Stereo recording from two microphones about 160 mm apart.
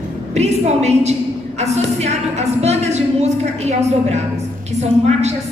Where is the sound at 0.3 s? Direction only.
45° right (ahead or behind).